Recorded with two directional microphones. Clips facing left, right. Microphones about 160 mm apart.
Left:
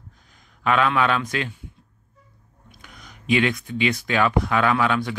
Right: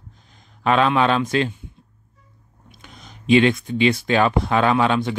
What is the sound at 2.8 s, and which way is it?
Speech, 25° right (ahead or behind).